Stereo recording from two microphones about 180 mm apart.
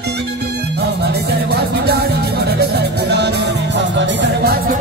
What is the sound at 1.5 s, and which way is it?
Music, 60° right (ahead or behind).